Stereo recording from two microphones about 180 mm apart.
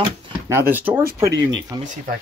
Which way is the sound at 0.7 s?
10° right (ahead or behind).